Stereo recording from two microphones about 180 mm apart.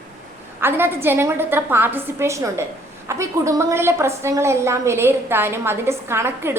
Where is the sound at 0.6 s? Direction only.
10° right (ahead or behind).